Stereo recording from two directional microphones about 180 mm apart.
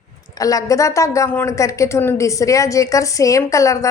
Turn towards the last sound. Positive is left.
turn(degrees=15)  # may be behind; listen again after turning